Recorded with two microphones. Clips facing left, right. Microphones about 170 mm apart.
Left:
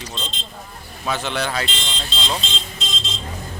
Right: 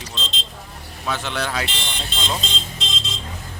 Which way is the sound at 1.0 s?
Centre (ahead or behind).